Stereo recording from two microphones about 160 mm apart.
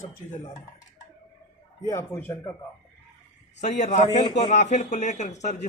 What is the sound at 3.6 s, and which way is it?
A man's voice, 45° left (ahead or behind).